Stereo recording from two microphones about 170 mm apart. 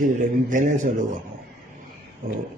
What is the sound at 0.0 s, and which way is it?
Speech, 50° right (ahead or behind).